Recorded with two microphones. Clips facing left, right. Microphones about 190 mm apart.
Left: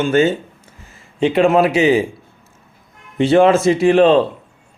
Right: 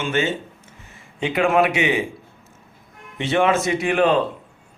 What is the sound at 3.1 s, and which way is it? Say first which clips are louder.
Speech: left 7 dB; 35° left (ahead or behind).